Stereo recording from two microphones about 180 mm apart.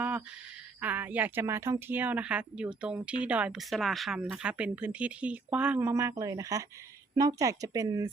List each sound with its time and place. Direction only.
0.8 s speech: 10° right (ahead or behind)